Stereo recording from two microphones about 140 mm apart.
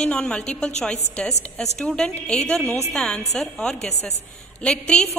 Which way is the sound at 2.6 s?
20° right (ahead or behind).